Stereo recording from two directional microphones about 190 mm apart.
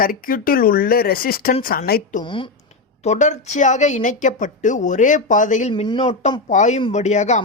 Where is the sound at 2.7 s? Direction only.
35° left (ahead or behind).